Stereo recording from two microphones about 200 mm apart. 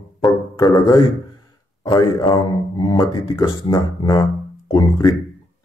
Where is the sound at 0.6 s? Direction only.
20° left (ahead or behind).